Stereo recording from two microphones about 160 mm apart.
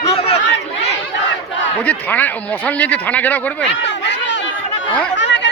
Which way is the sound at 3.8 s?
90° left.